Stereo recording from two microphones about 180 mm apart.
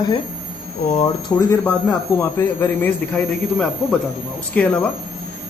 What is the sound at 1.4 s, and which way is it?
Speech, 15° left (ahead or behind).